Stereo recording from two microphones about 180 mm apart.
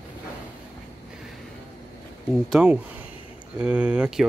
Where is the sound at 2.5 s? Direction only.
5° right (ahead or behind).